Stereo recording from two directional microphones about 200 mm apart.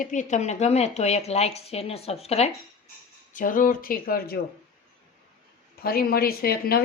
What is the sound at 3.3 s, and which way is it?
A woman's voice, 40° left (ahead or behind).